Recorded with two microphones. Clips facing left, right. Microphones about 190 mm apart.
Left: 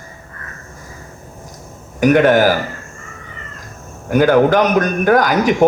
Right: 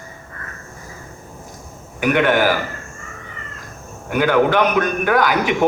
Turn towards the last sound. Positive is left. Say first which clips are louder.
# left 4 dB
turn(degrees=40)  # may be behind; listen again after turning